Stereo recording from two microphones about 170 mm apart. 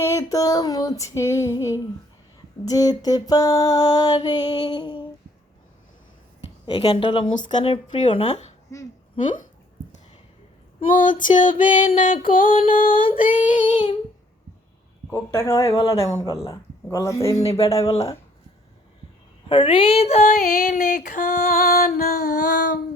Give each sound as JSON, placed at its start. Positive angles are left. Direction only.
{"t": 0.0, "sound": "music", "side_deg": 20}
{"t": 6.7, "sound": "a sound", "side_deg": 30}
{"t": 8.7, "sound": "a sound", "side_deg": 20}
{"t": 10.8, "sound": "child singing", "side_deg": 50}
{"t": 12.6, "sound": "music", "side_deg": 55}
{"t": 13.1, "sound": "child singing", "side_deg": 55}
{"t": 15.1, "sound": "speech", "side_deg": 15}
{"t": 17.7, "sound": "music", "side_deg": 20}
{"t": 19.5, "sound": "a sound", "side_deg": 30}
{"t": 21.7, "sound": "music", "side_deg": 65}